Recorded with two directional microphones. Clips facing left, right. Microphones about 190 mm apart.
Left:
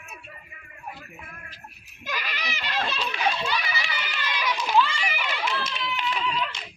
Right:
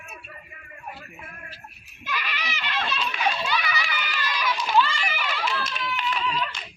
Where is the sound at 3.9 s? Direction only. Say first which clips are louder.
Right 2 dB; 25° left (ahead or behind).